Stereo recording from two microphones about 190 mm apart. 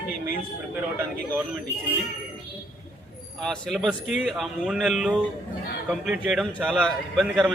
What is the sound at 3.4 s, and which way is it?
A man's voice, centre (ahead or behind).